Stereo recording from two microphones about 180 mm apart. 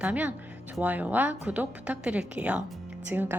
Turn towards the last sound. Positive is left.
turn(degrees=-10)  # may be behind; listen again after turning